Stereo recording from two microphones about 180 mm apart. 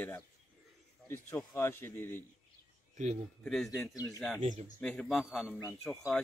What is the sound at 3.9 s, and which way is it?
Speech, 20° left (ahead or behind).